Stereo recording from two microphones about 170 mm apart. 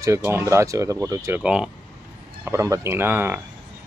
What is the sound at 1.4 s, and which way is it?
Speech, 5° right (ahead or behind).